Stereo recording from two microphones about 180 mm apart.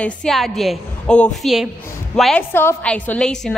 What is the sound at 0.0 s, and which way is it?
A woman's voice, 5° left (ahead or behind).